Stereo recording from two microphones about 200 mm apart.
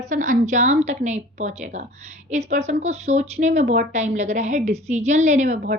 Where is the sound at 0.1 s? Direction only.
40° right (ahead or behind).